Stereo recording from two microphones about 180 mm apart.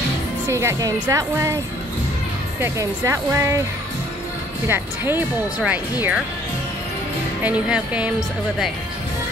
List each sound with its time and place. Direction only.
0.5 s speech: 15° right (ahead or behind)
2.6 s speech: 15° right (ahead or behind)
4.6 s speech: 10° right (ahead or behind)
7.4 s speech: 5° right (ahead or behind)